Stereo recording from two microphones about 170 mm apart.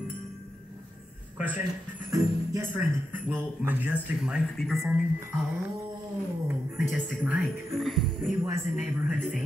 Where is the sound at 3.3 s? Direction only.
10° right (ahead or behind).